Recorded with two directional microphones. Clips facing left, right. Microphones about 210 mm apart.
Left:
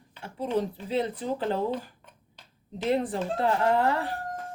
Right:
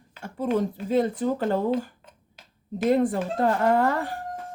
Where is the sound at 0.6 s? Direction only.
45° right (ahead or behind).